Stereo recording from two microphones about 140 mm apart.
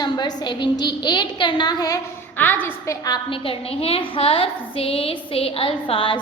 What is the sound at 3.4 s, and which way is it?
A woman's voice, 45° left (ahead or behind).